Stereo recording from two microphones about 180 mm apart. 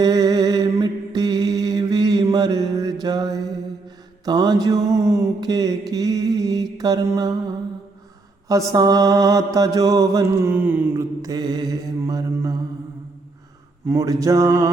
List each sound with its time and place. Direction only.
0.0 s mantra: 20° right (ahead or behind)
13.8 s mantra: 20° right (ahead or behind)